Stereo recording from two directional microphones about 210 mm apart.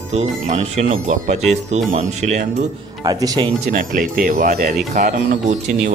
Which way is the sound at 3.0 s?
15° right (ahead or behind).